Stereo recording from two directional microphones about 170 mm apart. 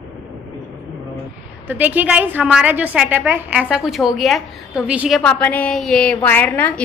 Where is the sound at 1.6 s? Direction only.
10° right (ahead or behind).